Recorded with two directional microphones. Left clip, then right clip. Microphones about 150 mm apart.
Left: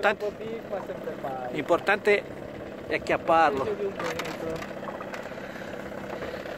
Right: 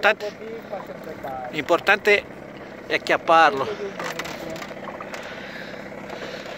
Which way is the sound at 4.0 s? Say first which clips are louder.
Right 2 dB; 90° right.